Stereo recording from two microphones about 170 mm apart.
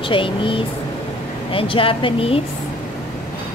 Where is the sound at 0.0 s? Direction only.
30° left (ahead or behind).